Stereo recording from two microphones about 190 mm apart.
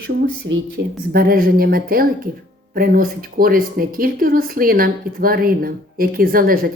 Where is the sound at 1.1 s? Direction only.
50° right (ahead or behind).